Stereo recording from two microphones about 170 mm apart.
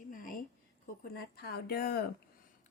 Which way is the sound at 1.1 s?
65° left (ahead or behind).